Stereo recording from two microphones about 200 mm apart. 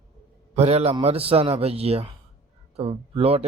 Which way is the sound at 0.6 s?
30° right (ahead or behind).